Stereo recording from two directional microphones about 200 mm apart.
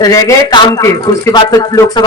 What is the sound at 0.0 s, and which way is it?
A man's voice, 15° left (ahead or behind).